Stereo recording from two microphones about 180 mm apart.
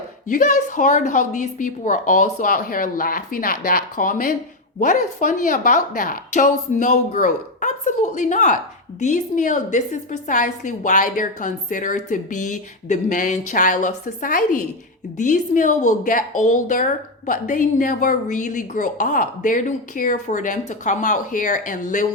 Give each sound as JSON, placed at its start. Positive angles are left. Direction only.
{"t": 0.3, "sound": "a woman's voice", "side_deg": 45}